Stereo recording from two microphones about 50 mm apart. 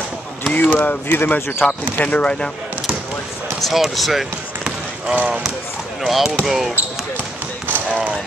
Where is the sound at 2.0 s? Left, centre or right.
Left.